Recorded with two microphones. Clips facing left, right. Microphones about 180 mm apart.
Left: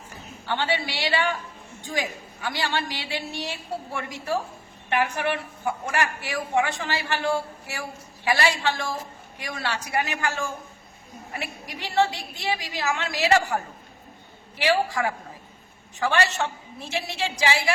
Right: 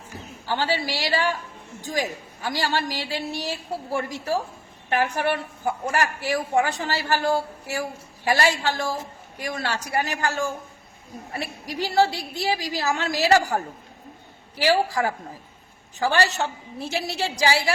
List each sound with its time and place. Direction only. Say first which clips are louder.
0.4 s a woman's voice: right 1 dB; 40° right (ahead or behind)